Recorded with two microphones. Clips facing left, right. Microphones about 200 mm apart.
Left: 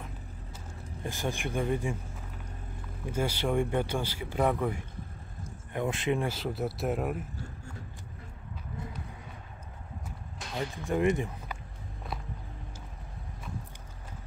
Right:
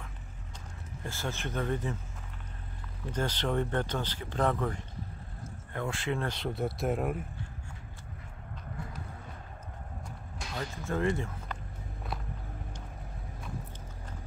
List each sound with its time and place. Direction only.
1.0 s speech: 15° left (ahead or behind)
3.1 s speech: 10° left (ahead or behind)
6.2 s speech: centre (ahead or behind)
10.5 s speech: 15° left (ahead or behind)